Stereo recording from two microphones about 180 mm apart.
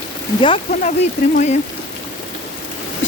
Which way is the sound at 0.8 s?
40° left (ahead or behind).